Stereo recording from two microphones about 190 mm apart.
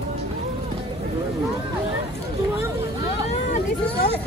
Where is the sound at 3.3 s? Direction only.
35° left (ahead or behind).